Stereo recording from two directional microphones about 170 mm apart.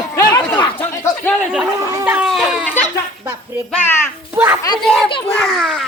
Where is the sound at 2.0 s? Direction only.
5° right (ahead or behind).